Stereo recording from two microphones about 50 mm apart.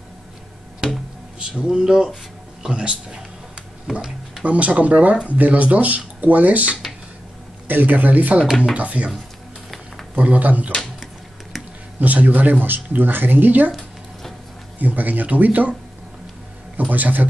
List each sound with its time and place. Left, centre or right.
0.8 s music: centre
1.6 s a man's voice: centre
4.5 s speech: right
10.1 s speech: right
12.0 s speech: right
14.8 s speech: right
16.9 s speech: right